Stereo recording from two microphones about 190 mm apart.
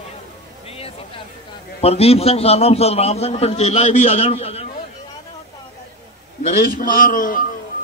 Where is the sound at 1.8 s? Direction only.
30° left (ahead or behind).